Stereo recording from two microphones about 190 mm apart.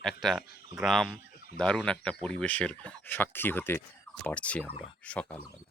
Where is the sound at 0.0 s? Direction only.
Centre (ahead or behind).